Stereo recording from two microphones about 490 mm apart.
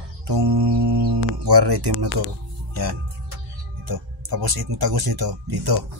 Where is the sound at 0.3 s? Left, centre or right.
Right.